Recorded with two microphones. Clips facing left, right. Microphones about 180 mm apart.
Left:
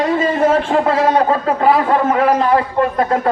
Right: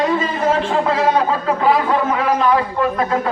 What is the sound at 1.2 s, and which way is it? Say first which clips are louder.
A man's voice: left 3 dB; 45° left (ahead or behind).